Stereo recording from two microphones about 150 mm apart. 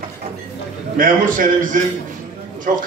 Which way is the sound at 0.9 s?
65° right (ahead or behind).